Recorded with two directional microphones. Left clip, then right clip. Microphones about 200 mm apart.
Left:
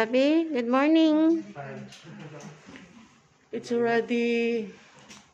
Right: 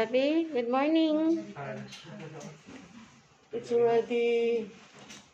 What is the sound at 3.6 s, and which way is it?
Mantra, 45° left (ahead or behind).